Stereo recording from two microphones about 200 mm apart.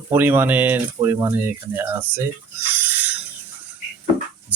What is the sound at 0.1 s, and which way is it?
Mantra, 10° right (ahead or behind).